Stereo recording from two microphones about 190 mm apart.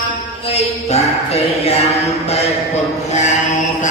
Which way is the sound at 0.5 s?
35° left (ahead or behind).